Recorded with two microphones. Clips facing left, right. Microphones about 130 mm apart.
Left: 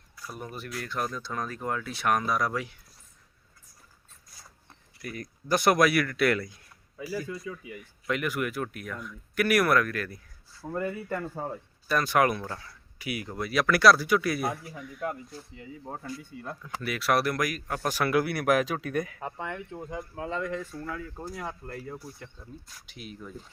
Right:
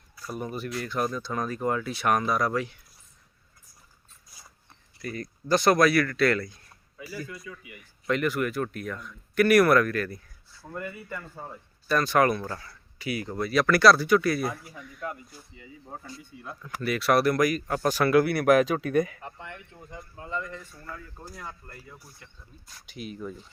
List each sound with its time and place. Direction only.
0.2 s a sound: centre (ahead or behind)
0.5 s speech: centre (ahead or behind)
5.0 s speech: 10° left (ahead or behind)
7.4 s speech: 30° left (ahead or behind)
8.0 s speech: 10° left (ahead or behind)
10.8 s speech: 35° left (ahead or behind)
11.1 s speech: 50° left (ahead or behind)
11.9 s speech: 10° left (ahead or behind)
12.5 s speech: centre (ahead or behind)
15.5 s speech: 55° left (ahead or behind)
16.8 s speech: 5° left (ahead or behind)
19.7 s speech: 70° left (ahead or behind); by 20.7 s 90° left
20.8 s speech: 75° left (ahead or behind)
22.6 s speech: centre (ahead or behind)